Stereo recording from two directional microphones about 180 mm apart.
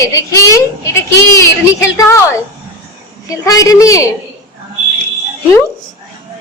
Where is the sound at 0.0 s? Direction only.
20° left (ahead or behind).